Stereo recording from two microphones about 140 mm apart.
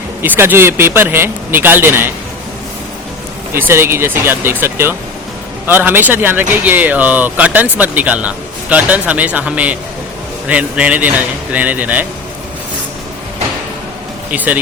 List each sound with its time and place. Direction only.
0.2 s a man's voice: 15° right (ahead or behind)
3.5 s a man's voice: 15° right (ahead or behind)
14.3 s a man's voice: 10° right (ahead or behind)